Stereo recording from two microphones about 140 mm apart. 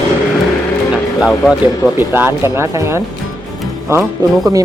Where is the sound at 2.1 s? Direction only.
15° right (ahead or behind).